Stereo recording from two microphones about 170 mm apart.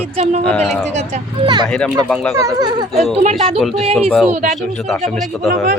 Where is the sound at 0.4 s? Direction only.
5° left (ahead or behind).